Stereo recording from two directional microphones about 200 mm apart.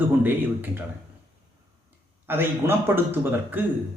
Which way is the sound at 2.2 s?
10° right (ahead or behind).